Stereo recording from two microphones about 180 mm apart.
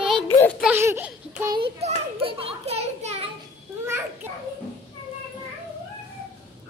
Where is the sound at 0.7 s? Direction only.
10° right (ahead or behind).